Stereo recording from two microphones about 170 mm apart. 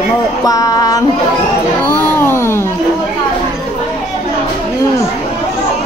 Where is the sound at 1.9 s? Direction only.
15° left (ahead or behind).